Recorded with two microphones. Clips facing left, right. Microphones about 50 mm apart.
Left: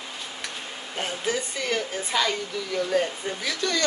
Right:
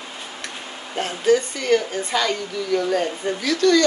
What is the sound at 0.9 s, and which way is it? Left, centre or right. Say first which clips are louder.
Speech: right 9 dB; centre.